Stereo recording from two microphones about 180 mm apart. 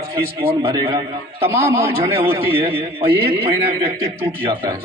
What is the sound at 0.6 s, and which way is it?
Speech, 30° right (ahead or behind).